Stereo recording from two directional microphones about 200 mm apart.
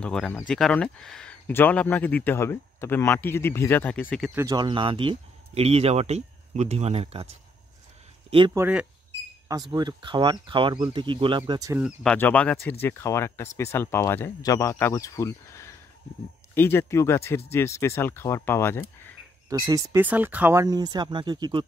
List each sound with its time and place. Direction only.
0.0 s speech: 5° left (ahead or behind)
4.4 s speech: 20° right (ahead or behind)
8.5 s speech: 5° right (ahead or behind)
9.5 s speech: 20° right (ahead or behind)
11.8 s speech: 5° left (ahead or behind)
19.6 s speech: 15° right (ahead or behind)